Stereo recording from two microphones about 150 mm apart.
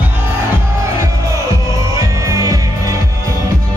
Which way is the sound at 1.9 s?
20° right (ahead or behind).